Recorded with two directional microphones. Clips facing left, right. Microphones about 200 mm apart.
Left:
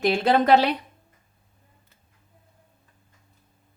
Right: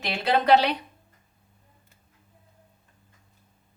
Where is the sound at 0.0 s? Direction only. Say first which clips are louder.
Left 5 dB; 45° left (ahead or behind).